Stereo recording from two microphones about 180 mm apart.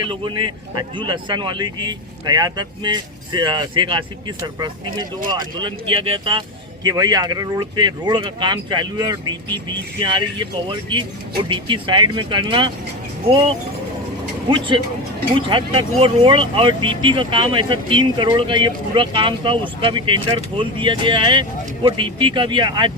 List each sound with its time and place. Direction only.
0.0 s speech: 25° right (ahead or behind)
15.4 s speech: 25° right (ahead or behind)